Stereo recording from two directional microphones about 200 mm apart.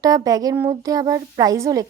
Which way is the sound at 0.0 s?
20° right (ahead or behind).